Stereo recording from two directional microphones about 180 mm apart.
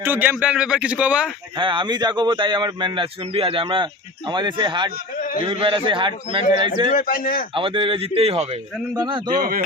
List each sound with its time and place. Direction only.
0.0 s speech: 10° right (ahead or behind)
1.5 s speech: 25° right (ahead or behind)
5.2 s a sound: 50° left (ahead or behind)
5.5 s speech: 30° right (ahead or behind)
6.9 s a man's voice: 50° left (ahead or behind)
7.5 s speech: 30° right (ahead or behind)